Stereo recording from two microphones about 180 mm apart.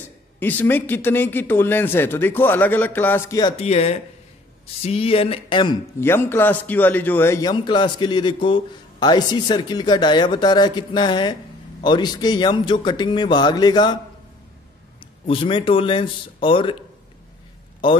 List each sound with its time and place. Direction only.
0.4 s a man's voice: 10° left (ahead or behind)
3.5 s speech: 35° left (ahead or behind)
5.9 s a man's voice: 15° left (ahead or behind)
15.2 s a man's voice: 30° left (ahead or behind)
17.8 s a man's voice: 30° left (ahead or behind)